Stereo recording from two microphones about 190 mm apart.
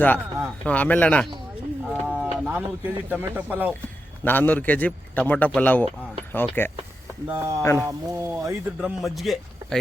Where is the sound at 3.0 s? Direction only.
10° right (ahead or behind).